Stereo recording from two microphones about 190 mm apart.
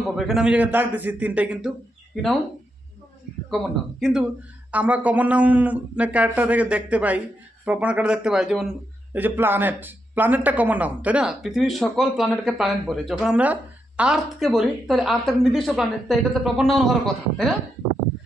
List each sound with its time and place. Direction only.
0.1 s speech: centre (ahead or behind)
3.4 s a man's voice: centre (ahead or behind)